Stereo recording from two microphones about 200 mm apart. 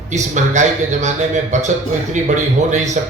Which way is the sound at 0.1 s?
35° right (ahead or behind).